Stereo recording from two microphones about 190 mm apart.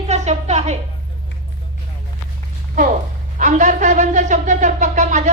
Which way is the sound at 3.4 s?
40° right (ahead or behind).